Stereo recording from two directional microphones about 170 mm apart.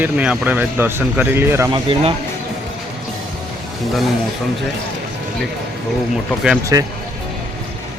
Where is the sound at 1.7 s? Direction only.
30° right (ahead or behind).